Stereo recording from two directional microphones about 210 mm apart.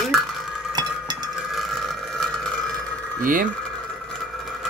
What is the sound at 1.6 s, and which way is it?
Burping, centre (ahead or behind).